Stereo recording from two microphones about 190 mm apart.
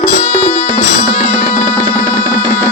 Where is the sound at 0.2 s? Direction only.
40° left (ahead or behind).